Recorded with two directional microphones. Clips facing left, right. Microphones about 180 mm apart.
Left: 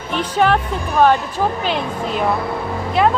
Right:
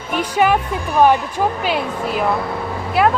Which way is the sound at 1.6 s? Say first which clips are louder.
Right 1 dB; 10° right (ahead or behind).